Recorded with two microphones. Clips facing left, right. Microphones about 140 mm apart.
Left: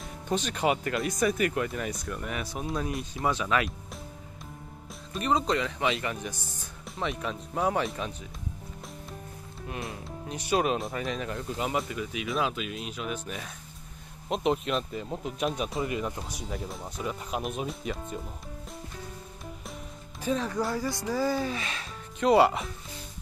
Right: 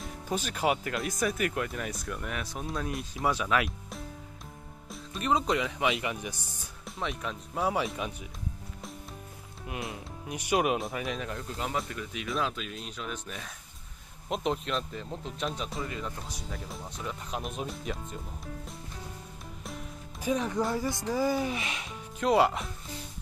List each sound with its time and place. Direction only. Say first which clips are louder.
0.0 s speech: left 3 dB; 5° right (ahead or behind)
5.1 s speech: left 1 dB; centre (ahead or behind)
5.5 s speech: left 1 dB; 10° right (ahead or behind)
7.0 s speech: left 3 dB; centre (ahead or behind)
10.2 s speech: left 1 dB; 15° right (ahead or behind)
10.8 s speech: left 1 dB; 5° right (ahead or behind); by 16.2 s 15° left (ahead or behind)
16.6 s speech: left 3 dB; 5° left (ahead or behind)
20.2 s speech: even; 15° right (ahead or behind)
22.2 s speech: left 3 dB; centre (ahead or behind)